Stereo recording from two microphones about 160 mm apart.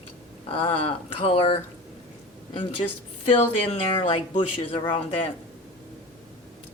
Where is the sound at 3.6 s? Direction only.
35° left (ahead or behind).